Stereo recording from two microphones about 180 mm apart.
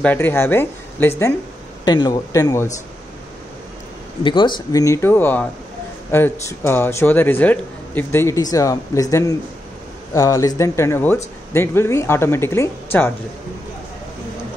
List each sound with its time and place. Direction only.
0.0 s a man's voice: 10° left (ahead or behind)
1.9 s a man's voice: 25° left (ahead or behind)
4.2 s a man's voice: 25° left (ahead or behind)